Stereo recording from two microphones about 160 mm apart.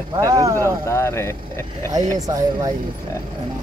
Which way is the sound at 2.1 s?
20° right (ahead or behind).